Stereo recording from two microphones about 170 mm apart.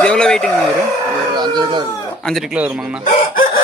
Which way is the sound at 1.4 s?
25° right (ahead or behind).